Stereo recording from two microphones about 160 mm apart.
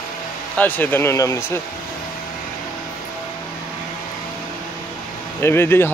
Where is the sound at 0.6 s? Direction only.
10° left (ahead or behind).